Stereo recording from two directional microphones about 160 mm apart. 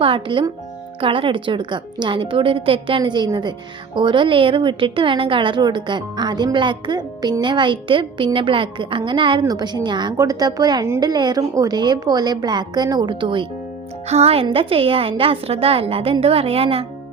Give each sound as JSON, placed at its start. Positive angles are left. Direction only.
{"t": 0.0, "sound": "a woman's voice", "side_deg": -35}